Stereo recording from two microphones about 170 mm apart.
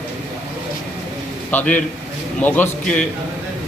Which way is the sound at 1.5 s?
10° left (ahead or behind).